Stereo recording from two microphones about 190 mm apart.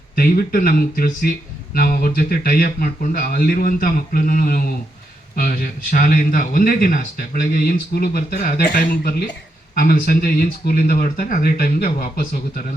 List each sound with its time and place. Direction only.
0.2 s speech: 50° left (ahead or behind)